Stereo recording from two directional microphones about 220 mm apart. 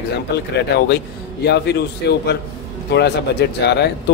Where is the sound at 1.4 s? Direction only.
50° left (ahead or behind).